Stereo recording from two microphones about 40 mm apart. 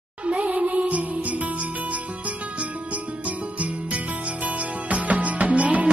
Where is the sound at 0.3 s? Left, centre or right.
Right.